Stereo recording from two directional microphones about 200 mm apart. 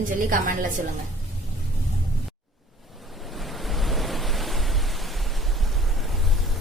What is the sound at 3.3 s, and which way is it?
Waves, centre (ahead or behind).